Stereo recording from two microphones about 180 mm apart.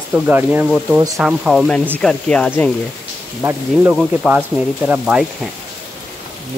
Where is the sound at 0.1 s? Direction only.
10° right (ahead or behind).